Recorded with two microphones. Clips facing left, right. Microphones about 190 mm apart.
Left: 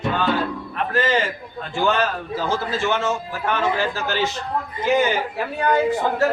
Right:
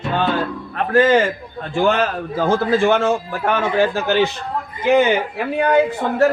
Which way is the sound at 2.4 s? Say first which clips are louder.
Right 8 dB; 55° right (ahead or behind).